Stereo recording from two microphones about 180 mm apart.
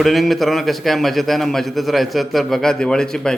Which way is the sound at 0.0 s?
Centre (ahead or behind).